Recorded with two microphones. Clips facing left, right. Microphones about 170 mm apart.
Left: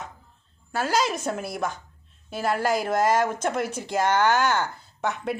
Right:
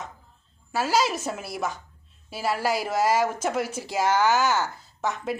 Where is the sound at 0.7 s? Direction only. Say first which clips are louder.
Right 1 dB; 5° right (ahead or behind).